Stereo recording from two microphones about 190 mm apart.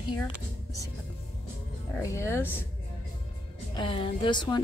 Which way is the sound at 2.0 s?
15° left (ahead or behind).